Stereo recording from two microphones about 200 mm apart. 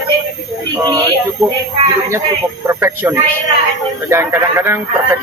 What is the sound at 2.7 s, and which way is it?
Speech, 10° right (ahead or behind).